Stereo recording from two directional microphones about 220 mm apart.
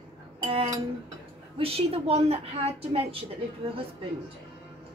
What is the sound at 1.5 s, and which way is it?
A woman's voice, 25° right (ahead or behind).